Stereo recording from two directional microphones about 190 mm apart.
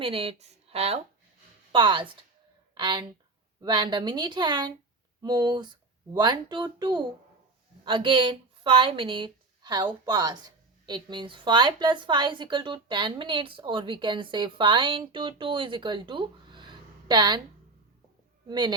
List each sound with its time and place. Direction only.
0.0 s a woman's voice: 30° right (ahead or behind)
18.4 s a woman's voice: 25° right (ahead or behind)